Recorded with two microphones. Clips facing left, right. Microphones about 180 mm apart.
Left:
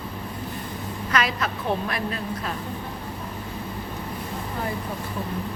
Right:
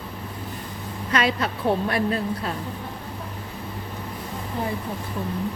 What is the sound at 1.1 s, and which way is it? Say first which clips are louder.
A woman's voice: right 2 dB; 30° right (ahead or behind).